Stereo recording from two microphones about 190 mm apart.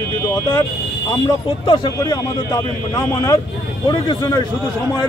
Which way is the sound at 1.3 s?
20° left (ahead or behind).